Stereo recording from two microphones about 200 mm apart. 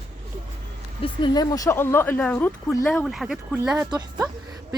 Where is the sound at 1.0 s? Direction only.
20° left (ahead or behind).